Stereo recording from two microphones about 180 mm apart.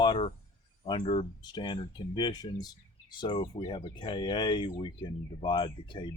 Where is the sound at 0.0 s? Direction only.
30° left (ahead or behind).